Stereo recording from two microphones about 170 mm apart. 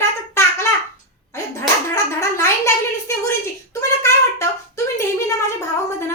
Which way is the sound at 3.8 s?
15° left (ahead or behind).